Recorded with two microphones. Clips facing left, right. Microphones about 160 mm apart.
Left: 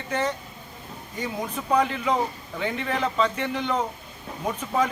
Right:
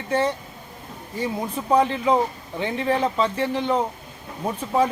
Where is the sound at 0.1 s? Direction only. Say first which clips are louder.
Right 4 dB; 30° right (ahead or behind).